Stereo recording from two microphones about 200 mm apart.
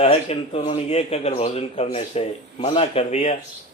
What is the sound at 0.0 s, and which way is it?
Speech, 30° left (ahead or behind).